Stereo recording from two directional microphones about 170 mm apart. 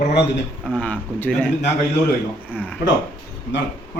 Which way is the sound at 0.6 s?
5° left (ahead or behind).